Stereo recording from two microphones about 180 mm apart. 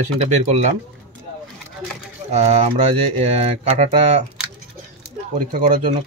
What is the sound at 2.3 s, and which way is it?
Speech, 40° right (ahead or behind).